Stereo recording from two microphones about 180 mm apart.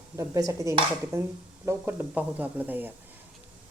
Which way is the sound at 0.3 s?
20° right (ahead or behind).